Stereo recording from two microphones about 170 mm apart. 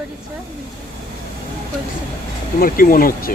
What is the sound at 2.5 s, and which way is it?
Speech, 60° left (ahead or behind).